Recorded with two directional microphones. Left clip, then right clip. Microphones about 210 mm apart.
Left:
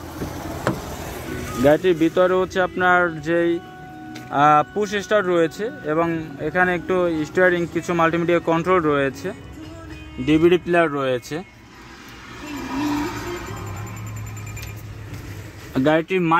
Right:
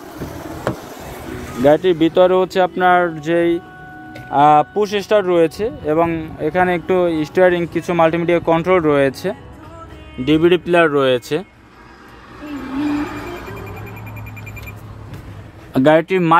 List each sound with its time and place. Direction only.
0.7 s a sound: 35° left (ahead or behind); by 1.6 s 50° left (ahead or behind)
1.6 s speech: 10° right (ahead or behind)
15.7 s speech: 20° right (ahead or behind)